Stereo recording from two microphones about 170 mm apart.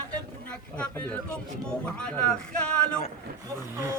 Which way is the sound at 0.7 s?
10° left (ahead or behind).